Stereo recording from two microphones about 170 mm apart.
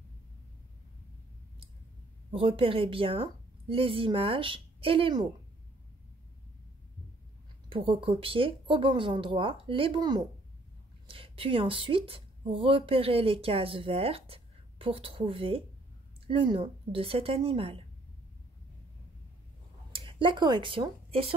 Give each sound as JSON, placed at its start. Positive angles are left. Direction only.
{"t": 2.3, "sound": "speech", "side_deg": -30}
{"t": 7.7, "sound": "speech", "side_deg": -30}
{"t": 19.9, "sound": "speech", "side_deg": -30}